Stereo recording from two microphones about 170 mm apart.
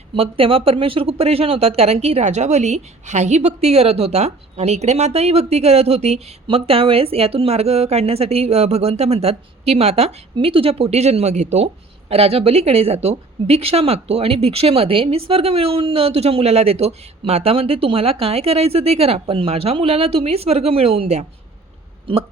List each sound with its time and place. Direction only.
0.1 s speech: 35° right (ahead or behind)